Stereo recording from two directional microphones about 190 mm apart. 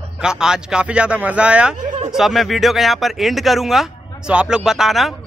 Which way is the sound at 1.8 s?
40° right (ahead or behind).